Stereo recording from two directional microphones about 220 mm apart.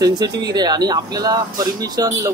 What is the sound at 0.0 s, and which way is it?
Speech, 15° right (ahead or behind).